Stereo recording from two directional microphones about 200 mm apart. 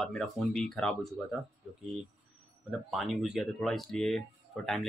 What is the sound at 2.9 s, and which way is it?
Speech, centre (ahead or behind).